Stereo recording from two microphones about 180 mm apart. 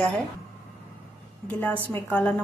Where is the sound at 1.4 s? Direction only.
10° left (ahead or behind).